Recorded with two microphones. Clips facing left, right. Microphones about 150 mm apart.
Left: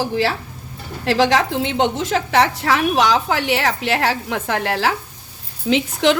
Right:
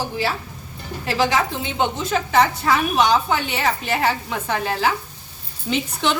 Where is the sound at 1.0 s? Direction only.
85° left.